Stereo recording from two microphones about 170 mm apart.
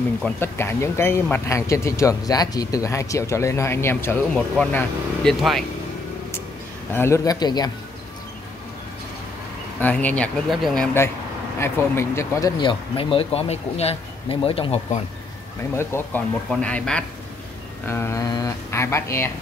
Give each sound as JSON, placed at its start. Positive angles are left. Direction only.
{"t": 0.2, "sound": "speech", "side_deg": 15}
{"t": 6.9, "sound": "speech", "side_deg": 15}
{"t": 9.8, "sound": "speech", "side_deg": 10}
{"t": 11.6, "sound": "speech", "side_deg": 15}
{"t": 15.7, "sound": "speech", "side_deg": 15}